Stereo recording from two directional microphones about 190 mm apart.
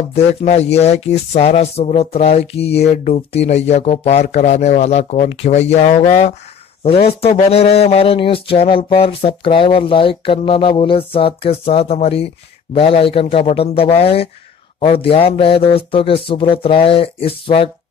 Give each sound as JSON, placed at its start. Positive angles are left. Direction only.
{"t": 0.1, "sound": "speech", "side_deg": 35}